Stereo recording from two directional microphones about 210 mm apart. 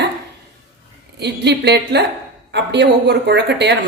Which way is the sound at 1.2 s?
50° right (ahead or behind).